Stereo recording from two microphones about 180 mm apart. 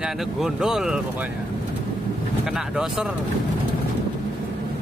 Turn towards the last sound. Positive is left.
turn(degrees=-5)  # may be behind; listen again after turning